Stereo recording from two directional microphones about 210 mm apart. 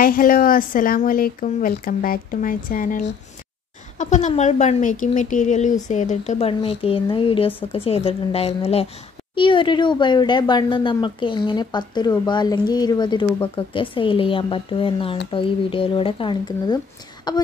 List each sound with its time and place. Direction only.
0.0 s speech: 40° left (ahead or behind); by 17.4 s 20° left (ahead or behind)